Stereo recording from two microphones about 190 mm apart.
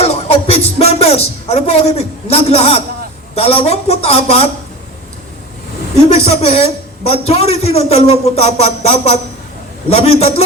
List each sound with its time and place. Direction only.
0.0 s a man's voice: 30° left (ahead or behind)
6.1 s a man's voice: 30° left (ahead or behind)